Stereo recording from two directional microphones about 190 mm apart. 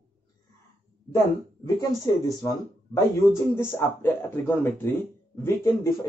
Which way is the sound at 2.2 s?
15° left (ahead or behind).